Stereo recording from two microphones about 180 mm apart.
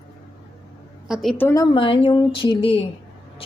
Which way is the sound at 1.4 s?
15° left (ahead or behind).